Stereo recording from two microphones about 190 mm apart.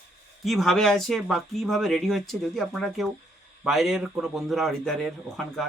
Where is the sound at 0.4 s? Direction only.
Centre (ahead or behind).